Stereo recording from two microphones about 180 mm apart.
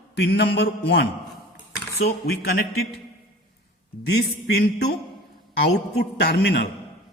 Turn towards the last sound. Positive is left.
turn(degrees=65)  # may be behind; listen again after turning